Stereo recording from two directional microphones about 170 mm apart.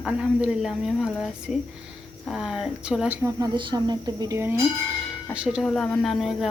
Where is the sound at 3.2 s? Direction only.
25° right (ahead or behind).